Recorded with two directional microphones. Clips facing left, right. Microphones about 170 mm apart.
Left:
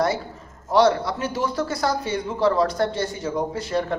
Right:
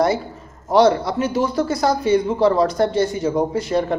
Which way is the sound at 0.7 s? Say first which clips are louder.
Right 3 dB; 15° right (ahead or behind).